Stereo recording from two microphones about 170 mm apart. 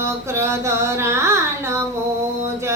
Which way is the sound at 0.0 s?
15° right (ahead or behind).